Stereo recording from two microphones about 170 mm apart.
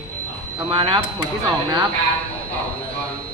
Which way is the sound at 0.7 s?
30° right (ahead or behind).